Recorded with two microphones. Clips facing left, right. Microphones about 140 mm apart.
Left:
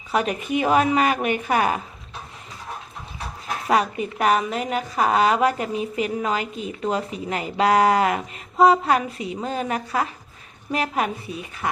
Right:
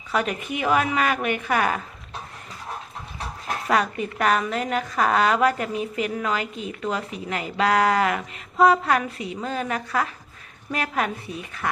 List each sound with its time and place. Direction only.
0.1 s a woman's voice: 20° left (ahead or behind)
3.7 s a woman's voice: 15° left (ahead or behind)